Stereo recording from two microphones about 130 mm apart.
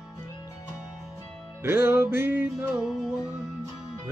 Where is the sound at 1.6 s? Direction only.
20° right (ahead or behind).